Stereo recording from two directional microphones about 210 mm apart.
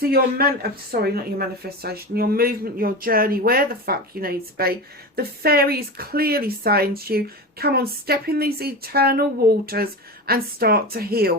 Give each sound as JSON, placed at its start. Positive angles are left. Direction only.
{"t": 0.0, "sound": "speech", "side_deg": -45}